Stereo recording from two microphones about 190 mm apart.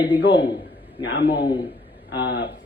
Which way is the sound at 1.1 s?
65° left (ahead or behind).